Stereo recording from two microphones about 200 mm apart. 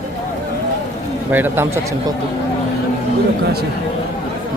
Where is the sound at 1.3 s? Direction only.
10° right (ahead or behind).